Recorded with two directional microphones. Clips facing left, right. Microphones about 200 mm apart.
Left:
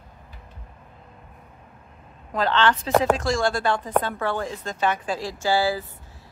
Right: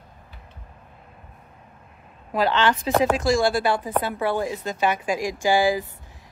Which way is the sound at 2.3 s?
10° right (ahead or behind).